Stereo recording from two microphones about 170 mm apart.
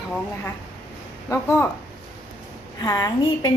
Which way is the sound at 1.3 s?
15° left (ahead or behind).